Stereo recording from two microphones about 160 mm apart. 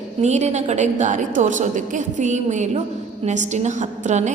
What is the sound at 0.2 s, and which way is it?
A woman's voice, 45° right (ahead or behind).